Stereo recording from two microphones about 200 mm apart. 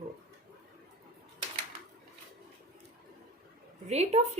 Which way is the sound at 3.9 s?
35° right (ahead or behind).